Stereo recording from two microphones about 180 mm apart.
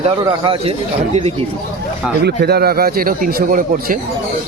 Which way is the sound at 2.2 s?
65° right (ahead or behind).